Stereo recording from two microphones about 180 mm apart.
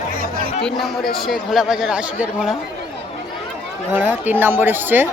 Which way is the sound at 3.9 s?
10° right (ahead or behind).